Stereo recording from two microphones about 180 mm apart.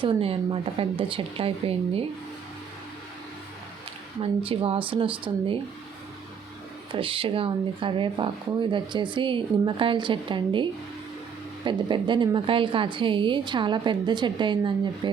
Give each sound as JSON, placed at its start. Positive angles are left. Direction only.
{"t": 0.0, "sound": "speech", "side_deg": -30}
{"t": 4.2, "sound": "a woman's voice", "side_deg": -30}
{"t": 6.9, "sound": "a woman's voice", "side_deg": -30}